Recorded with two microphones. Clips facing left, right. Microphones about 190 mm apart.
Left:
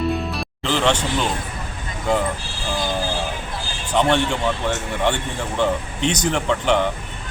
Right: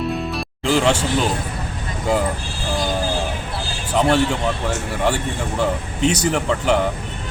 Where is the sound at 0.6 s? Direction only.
10° right (ahead or behind).